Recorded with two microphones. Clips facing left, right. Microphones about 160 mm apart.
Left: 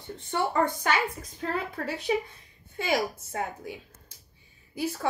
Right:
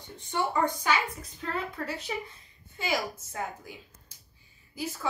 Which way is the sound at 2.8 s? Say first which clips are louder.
Left 4 dB; 60° left (ahead or behind).